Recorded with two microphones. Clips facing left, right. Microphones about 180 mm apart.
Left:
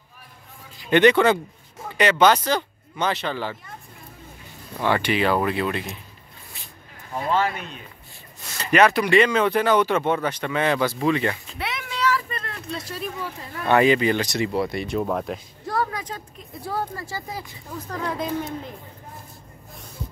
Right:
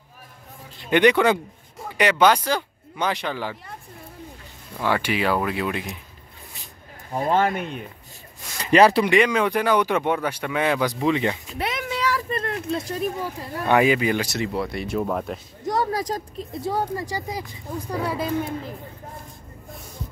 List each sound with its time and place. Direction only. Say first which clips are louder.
0.8 s speech: left 1 dB; 10° right (ahead or behind)
4.7 s speech: left 2 dB; 5° right (ahead or behind)
7.2 s speech: right 2 dB; 50° right (ahead or behind)
8.6 s speech: right 2 dB; 30° right (ahead or behind)
9.1 s speech: left 1 dB; 10° right (ahead or behind)
12.4 s a sound: right 7 dB; 50° right (ahead or behind)
13.7 s speech: left 1 dB; 10° right (ahead or behind)
15.6 s a sound: right 2 dB; 20° right (ahead or behind)
15.9 s speech: right 7 dB; 40° right (ahead or behind)
16.6 s speech: right 3 dB; 20° right (ahead or behind)